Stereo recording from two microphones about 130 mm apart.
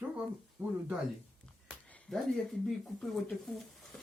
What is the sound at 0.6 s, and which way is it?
Speech, 15° right (ahead or behind).